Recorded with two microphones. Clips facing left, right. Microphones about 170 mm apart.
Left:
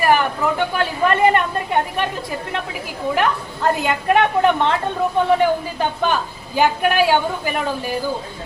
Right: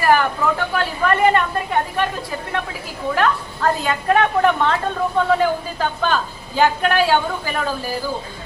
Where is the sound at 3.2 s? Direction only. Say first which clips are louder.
Right 2 dB; 15° left (ahead or behind).